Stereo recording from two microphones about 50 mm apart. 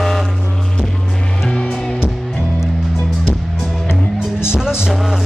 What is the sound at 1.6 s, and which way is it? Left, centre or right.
Music, centre.